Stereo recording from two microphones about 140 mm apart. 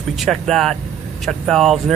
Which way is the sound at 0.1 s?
Centre (ahead or behind).